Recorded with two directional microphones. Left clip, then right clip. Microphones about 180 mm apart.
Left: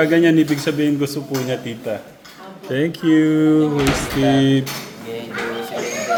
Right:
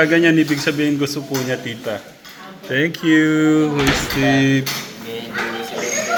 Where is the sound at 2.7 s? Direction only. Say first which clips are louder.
Right 1 dB; 25° left (ahead or behind).